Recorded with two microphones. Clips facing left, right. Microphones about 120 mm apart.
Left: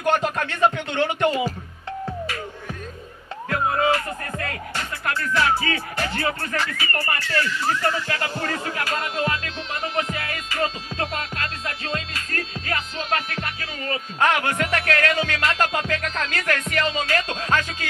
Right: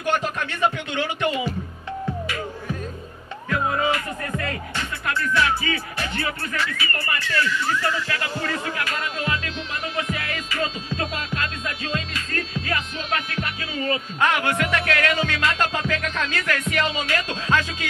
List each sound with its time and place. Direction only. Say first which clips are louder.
0.0 s music: left 2 dB; 40° left (ahead or behind)
3.4 s music: left 2 dB; 40° left (ahead or behind)